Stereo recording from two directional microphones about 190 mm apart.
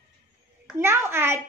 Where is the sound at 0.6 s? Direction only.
15° right (ahead or behind).